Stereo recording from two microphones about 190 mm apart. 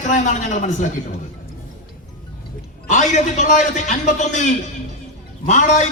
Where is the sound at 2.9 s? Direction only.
40° left (ahead or behind).